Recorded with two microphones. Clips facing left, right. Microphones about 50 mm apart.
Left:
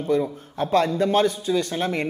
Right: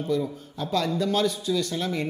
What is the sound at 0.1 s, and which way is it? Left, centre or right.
A man's voice, left.